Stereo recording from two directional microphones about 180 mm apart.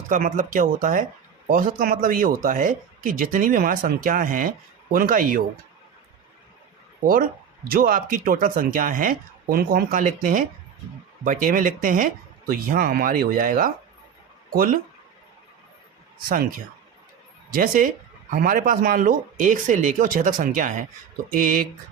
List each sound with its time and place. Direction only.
0.1 s speech: 45° right (ahead or behind)
7.7 s speech: 55° right (ahead or behind)
17.5 s speech: 50° right (ahead or behind)